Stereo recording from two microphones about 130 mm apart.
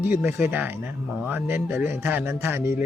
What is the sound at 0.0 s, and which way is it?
Speech, 15° right (ahead or behind).